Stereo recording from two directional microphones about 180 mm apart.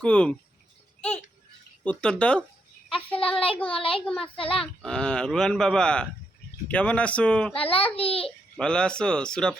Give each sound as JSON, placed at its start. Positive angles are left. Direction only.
{"t": 0.0, "sound": "speech", "side_deg": 5}
{"t": 1.8, "sound": "speech", "side_deg": 5}
{"t": 3.2, "sound": "a child's voice", "side_deg": 30}
{"t": 4.8, "sound": "speech", "side_deg": 5}
{"t": 7.5, "sound": "a child's voice", "side_deg": 30}
{"t": 8.5, "sound": "speech", "side_deg": 5}